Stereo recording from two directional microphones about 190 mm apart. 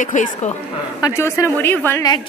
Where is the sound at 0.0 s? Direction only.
40° left (ahead or behind).